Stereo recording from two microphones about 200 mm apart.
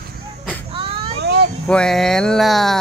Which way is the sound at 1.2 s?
55° right (ahead or behind).